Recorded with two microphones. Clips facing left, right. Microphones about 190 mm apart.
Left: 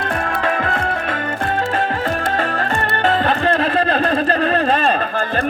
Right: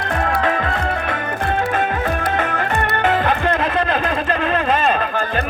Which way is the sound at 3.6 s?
35° left (ahead or behind).